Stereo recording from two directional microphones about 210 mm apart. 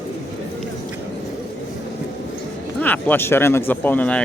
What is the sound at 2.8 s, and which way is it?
Speech, 10° left (ahead or behind).